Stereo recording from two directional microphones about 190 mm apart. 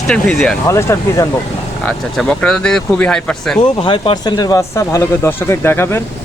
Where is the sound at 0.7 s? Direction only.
15° left (ahead or behind).